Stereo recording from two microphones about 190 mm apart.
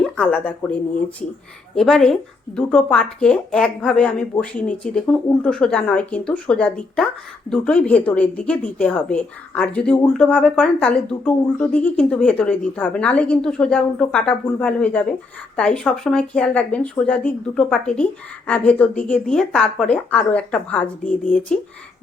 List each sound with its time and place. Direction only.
0.6 s speech: 10° left (ahead or behind)